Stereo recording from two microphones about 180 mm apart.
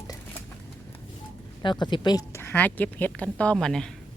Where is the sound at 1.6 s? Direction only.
25° left (ahead or behind); by 3.8 s 5° left (ahead or behind).